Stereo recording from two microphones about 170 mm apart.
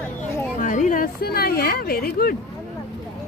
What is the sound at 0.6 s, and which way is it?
Speech, 50° left (ahead or behind).